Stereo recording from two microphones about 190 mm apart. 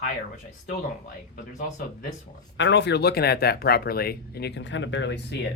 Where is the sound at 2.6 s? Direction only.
65° left (ahead or behind).